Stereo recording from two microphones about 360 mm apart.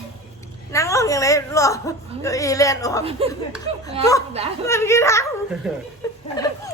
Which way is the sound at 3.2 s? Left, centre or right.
Centre.